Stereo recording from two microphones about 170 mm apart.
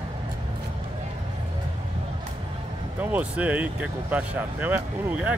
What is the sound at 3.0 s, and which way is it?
Speech, 10° right (ahead or behind).